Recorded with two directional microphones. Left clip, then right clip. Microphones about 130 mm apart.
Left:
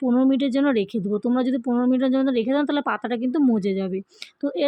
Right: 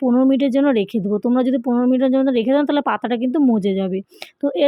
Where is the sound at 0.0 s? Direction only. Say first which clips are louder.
Right 4 dB; 20° right (ahead or behind).